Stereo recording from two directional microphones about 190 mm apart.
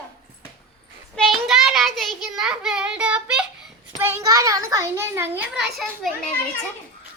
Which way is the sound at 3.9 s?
10° right (ahead or behind).